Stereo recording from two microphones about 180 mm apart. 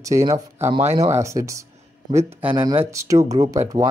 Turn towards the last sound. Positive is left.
turn(degrees=-15)  # may be behind; listen again after turning